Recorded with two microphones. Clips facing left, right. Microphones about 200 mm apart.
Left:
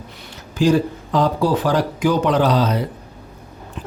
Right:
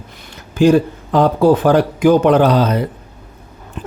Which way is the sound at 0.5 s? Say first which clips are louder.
Right 5 dB; 55° right (ahead or behind).